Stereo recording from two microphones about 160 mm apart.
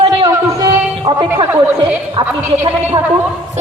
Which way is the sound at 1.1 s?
30° right (ahead or behind).